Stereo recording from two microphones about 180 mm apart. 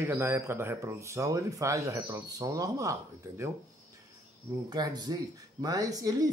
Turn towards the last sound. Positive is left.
turn(degrees=-20)  # may be behind; listen again after turning